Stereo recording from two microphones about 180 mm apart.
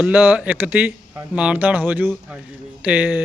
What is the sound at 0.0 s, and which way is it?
Speech, 10° right (ahead or behind).